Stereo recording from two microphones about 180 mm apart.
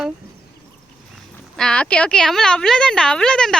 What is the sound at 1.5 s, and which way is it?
Speech, 5° left (ahead or behind).